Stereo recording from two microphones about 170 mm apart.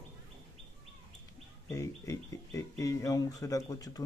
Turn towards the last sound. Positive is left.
turn(degrees=20)  # may be behind; listen again after turning